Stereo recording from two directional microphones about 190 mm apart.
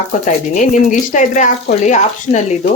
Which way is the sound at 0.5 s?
40° left (ahead or behind).